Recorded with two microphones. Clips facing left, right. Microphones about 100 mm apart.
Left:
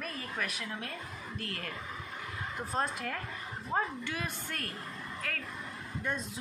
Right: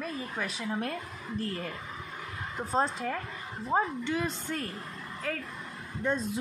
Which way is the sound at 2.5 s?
30° right (ahead or behind).